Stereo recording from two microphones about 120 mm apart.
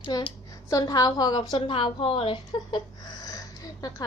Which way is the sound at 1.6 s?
45° left (ahead or behind).